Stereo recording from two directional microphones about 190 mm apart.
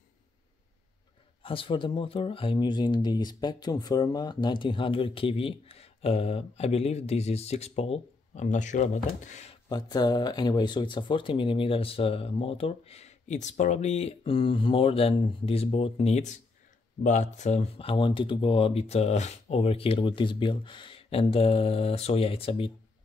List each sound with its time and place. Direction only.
1.4 s speech: 30° left (ahead or behind)
9.7 s speech: 20° left (ahead or behind)